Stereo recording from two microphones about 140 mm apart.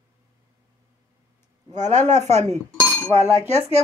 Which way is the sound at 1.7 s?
55° right (ahead or behind).